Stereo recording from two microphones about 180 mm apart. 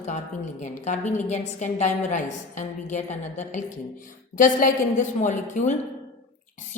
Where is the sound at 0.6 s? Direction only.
40° left (ahead or behind).